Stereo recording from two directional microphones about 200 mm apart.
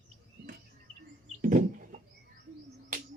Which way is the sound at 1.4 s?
45° right (ahead or behind).